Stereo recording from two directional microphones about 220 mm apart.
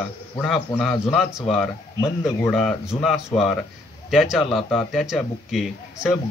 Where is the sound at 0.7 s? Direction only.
5° left (ahead or behind).